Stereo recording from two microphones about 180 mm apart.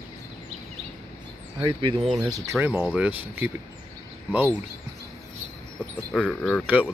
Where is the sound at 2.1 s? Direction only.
20° right (ahead or behind).